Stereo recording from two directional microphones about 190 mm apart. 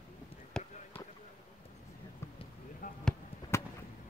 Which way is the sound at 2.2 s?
15° left (ahead or behind).